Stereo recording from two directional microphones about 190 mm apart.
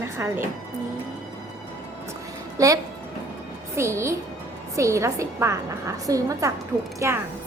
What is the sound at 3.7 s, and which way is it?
A woman's voice, 15° right (ahead or behind).